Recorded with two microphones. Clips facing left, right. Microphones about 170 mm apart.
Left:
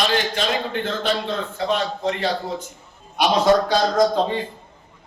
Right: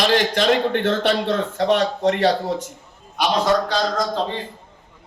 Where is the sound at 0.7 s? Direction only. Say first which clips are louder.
Right 4 dB; 70° right (ahead or behind).